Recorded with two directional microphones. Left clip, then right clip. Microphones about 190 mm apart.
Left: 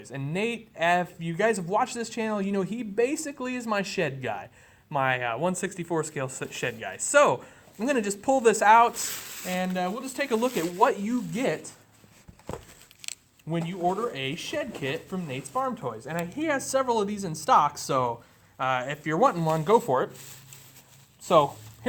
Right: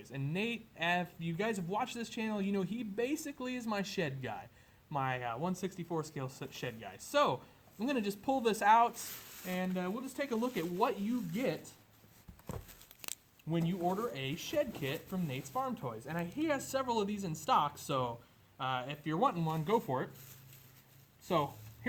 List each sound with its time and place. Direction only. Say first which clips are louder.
0.0 s speech: left 9 dB; 15° left (ahead or behind)
13.5 s speech: left 8 dB; 10° left (ahead or behind); by 20.1 s 25° left (ahead or behind)
21.2 s speech: left 13 dB; 30° left (ahead or behind)